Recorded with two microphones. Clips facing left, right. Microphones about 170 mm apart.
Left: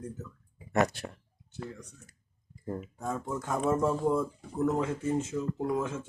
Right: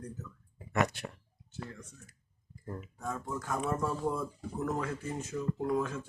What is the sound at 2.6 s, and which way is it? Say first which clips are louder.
Speech: left 4 dB; 25° left (ahead or behind).